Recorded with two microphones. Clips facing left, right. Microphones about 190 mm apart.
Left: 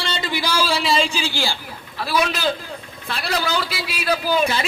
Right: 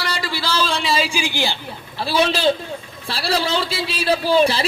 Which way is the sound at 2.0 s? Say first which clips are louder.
Right 3 dB; 30° right (ahead or behind).